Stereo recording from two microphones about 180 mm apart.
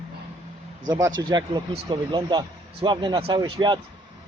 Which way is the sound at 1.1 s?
25° right (ahead or behind).